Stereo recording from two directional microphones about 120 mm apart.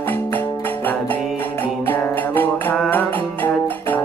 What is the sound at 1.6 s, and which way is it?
Music, 15° left (ahead or behind).